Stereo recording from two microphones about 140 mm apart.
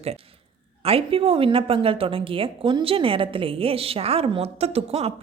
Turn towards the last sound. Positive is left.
turn(degrees=-45)  # may be behind; listen again after turning